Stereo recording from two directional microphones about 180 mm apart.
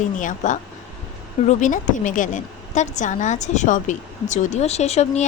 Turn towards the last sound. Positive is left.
turn(degrees=35)  # may be behind; listen again after turning